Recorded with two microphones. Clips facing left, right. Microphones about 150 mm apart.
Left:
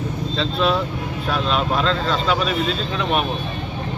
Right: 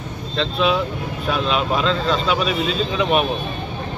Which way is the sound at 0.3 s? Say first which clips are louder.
Right 1 dB; centre (ahead or behind).